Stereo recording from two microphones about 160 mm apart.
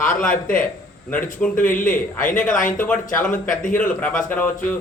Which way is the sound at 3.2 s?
55° left (ahead or behind).